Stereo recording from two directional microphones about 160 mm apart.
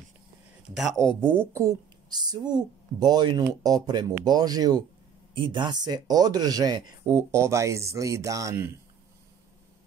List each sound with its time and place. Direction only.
0.7 s speech: centre (ahead or behind)
1.3 s speech: 15° right (ahead or behind)